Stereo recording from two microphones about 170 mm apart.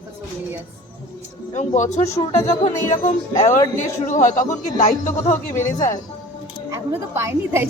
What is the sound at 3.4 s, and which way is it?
Speech, 45° left (ahead or behind).